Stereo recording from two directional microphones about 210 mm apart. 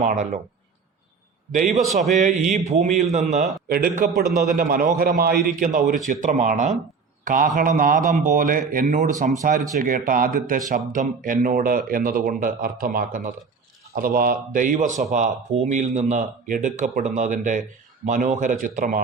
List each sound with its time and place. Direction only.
0.0 s speech: 40° right (ahead or behind)
1.5 s speech: 35° right (ahead or behind)
3.7 s a man's voice: 45° right (ahead or behind)